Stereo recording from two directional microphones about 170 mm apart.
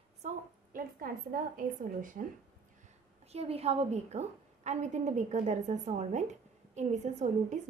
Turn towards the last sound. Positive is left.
turn(degrees=-45)  # may be behind; listen again after turning